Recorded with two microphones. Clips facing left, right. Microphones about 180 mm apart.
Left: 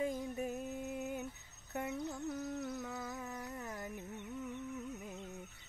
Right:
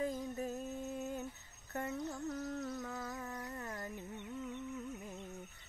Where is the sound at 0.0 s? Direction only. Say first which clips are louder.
Left 1 dB; 15° left (ahead or behind).